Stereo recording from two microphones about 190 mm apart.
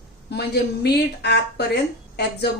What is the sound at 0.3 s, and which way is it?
A woman's voice, 60° left (ahead or behind).